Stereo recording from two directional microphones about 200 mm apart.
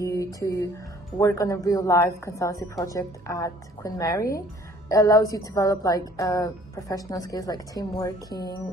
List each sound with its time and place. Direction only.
0.0 s music: 15° left (ahead or behind)
1.2 s a woman's voice: 15° left (ahead or behind)